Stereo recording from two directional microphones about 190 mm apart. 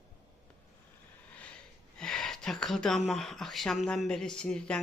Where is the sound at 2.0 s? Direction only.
5° left (ahead or behind).